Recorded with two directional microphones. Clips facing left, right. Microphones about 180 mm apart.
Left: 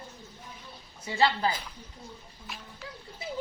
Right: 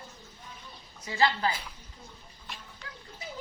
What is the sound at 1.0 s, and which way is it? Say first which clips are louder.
Speech: left 1 dB; 30° left (ahead or behind).